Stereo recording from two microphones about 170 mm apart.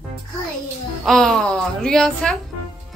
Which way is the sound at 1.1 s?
Centre (ahead or behind).